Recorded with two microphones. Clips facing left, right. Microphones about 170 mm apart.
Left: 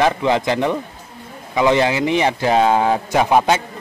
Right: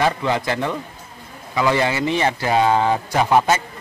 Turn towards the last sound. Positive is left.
turn(degrees=15)  # may be behind; listen again after turning